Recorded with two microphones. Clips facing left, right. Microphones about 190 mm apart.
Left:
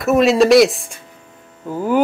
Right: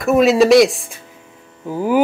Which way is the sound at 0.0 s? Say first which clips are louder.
Right 1 dB; centre (ahead or behind).